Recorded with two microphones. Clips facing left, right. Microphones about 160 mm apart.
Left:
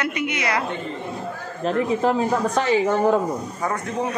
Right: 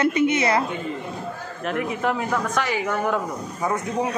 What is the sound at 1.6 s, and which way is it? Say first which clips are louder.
Speech: left 4 dB; 30° left (ahead or behind).